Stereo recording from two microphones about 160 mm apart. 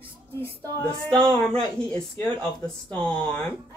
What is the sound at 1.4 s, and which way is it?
Speech, 5° left (ahead or behind).